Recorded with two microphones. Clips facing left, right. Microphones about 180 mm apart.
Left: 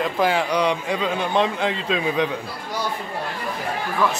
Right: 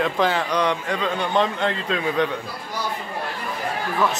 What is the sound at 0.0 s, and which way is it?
A man's voice, 10° left (ahead or behind).